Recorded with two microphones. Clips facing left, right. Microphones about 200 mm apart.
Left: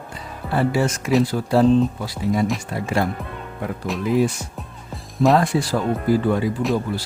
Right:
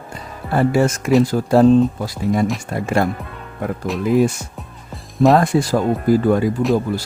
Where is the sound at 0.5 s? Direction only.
45° right (ahead or behind).